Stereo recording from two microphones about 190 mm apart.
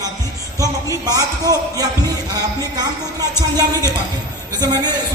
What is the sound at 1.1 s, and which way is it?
Speech, 20° right (ahead or behind).